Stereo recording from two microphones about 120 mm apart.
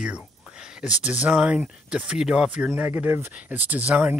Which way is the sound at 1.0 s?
10° right (ahead or behind).